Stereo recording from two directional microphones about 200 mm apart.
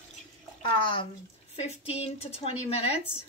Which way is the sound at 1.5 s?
30° left (ahead or behind).